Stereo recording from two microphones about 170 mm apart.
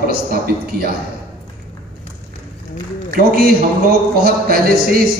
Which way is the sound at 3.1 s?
60° right (ahead or behind).